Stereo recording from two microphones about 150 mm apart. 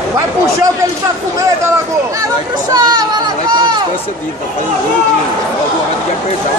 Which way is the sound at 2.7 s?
30° right (ahead or behind).